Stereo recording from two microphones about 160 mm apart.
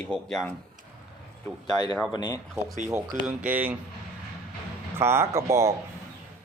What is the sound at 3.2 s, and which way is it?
Speech, 5° right (ahead or behind).